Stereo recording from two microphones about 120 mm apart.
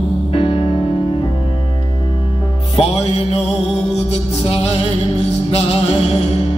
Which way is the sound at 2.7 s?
55° left (ahead or behind).